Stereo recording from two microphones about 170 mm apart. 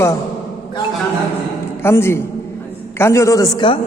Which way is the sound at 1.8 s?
15° left (ahead or behind).